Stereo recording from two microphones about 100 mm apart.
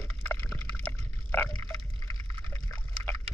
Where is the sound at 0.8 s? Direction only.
15° left (ahead or behind).